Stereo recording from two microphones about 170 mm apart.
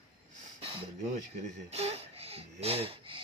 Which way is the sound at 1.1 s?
40° right (ahead or behind).